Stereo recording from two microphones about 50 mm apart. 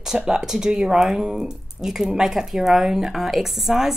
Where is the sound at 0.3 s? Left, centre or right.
Centre.